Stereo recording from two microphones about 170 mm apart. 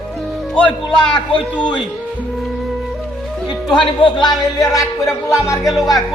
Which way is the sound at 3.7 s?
25° left (ahead or behind).